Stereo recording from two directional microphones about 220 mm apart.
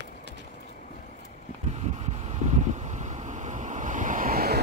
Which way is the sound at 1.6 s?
30° right (ahead or behind).